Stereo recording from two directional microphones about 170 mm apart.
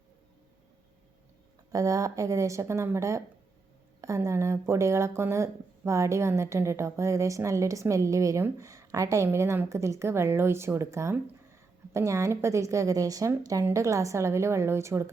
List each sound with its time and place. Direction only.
1.7 s speech: 20° right (ahead or behind)